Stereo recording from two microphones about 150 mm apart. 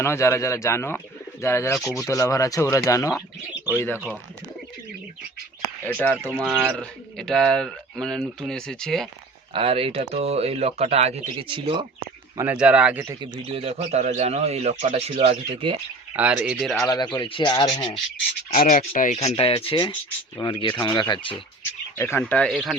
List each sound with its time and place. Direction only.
0.0 s speech: 15° left (ahead or behind)
1.8 s speech: centre (ahead or behind)
2.0 s speech: 20° left (ahead or behind)
5.8 s speech: 10° left (ahead or behind)
9.5 s speech: 40° right (ahead or behind)
12.4 s speech: 10° right (ahead or behind)
13.1 s speech: 40° right (ahead or behind)
16.1 s speech: 10° right (ahead or behind)
16.8 s speech: 25° left (ahead or behind)
18.5 s speech: 55° left (ahead or behind)
19.3 s speech: 40° left (ahead or behind)
21.9 s speech: 15° left (ahead or behind); by 22.8 s centre (ahead or behind)